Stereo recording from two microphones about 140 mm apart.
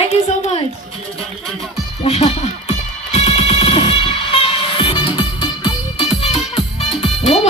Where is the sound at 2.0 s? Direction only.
50° left (ahead or behind).